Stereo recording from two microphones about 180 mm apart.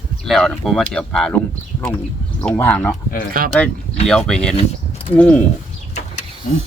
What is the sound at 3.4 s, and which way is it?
Speech, 55° right (ahead or behind).